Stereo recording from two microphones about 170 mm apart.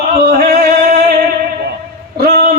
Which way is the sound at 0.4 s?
65° right (ahead or behind).